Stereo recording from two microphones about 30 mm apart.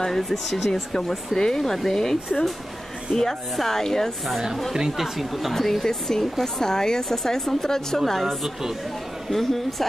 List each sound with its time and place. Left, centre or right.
0.0 s speech: centre
0.9 s speech: centre
3.5 s speech: centre
4.9 s speech: centre
5.5 s speech: centre